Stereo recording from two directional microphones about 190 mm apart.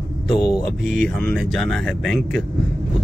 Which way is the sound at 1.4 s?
Centre (ahead or behind).